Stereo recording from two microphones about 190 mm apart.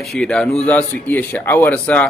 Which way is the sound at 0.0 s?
Centre (ahead or behind).